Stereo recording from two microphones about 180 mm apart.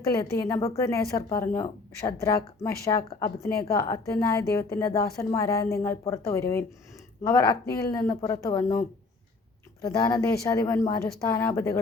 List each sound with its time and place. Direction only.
0.1 s a woman's voice: 20° left (ahead or behind)
9.8 s a woman's voice: 20° left (ahead or behind)